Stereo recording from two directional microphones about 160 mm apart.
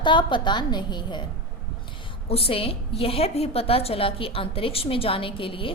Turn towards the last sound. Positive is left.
turn(degrees=35)  # may be behind; listen again after turning